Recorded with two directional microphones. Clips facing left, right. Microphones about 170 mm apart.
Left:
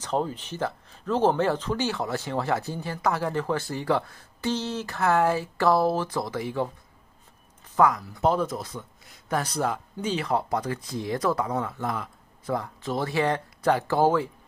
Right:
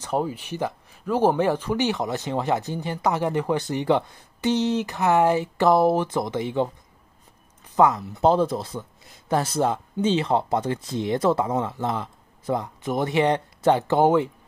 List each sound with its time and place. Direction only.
0.0 s speech: 10° right (ahead or behind)
7.7 s speech: 25° right (ahead or behind)